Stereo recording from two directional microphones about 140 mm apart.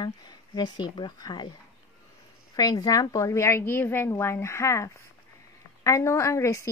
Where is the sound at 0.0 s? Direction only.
30° left (ahead or behind).